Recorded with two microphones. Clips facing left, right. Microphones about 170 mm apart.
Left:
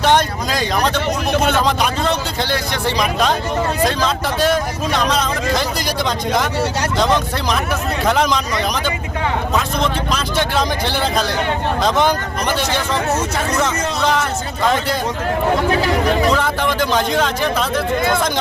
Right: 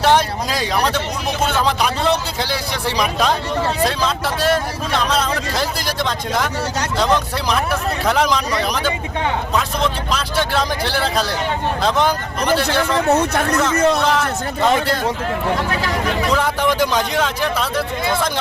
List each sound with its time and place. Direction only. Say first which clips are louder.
0.0 s speech: even; 5° right (ahead or behind)
2.4 s speech: left 2 dB; 10° right (ahead or behind)
8.0 s speech: left 1 dB; 5° right (ahead or behind)
10.8 s speech: left 1 dB; 5° right (ahead or behind)
13.1 s speech: right 2 dB; 60° right (ahead or behind)
16.3 s speech: even; 10° right (ahead or behind)